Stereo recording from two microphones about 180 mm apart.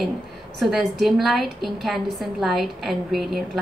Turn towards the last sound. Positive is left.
turn(degrees=0)  # may be behind; listen again after turning